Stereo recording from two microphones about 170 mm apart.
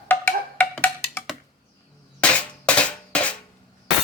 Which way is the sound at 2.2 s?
5° left (ahead or behind).